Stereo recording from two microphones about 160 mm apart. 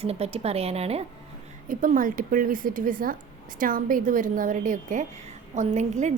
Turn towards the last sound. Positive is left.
turn(degrees=-50)  # may be behind; listen again after turning